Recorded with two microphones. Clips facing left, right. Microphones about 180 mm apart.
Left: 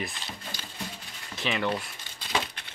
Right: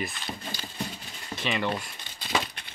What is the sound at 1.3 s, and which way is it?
Speech, centre (ahead or behind).